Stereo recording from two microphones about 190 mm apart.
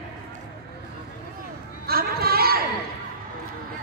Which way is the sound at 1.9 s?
55° right (ahead or behind).